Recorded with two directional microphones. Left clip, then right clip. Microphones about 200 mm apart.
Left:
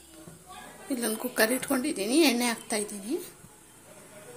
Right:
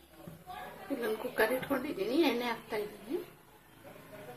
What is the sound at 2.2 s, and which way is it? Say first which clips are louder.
Speech: left 7 dB; 50° left (ahead or behind).